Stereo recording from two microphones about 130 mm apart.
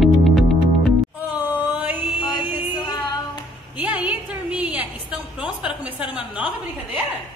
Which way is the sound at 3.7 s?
10° right (ahead or behind).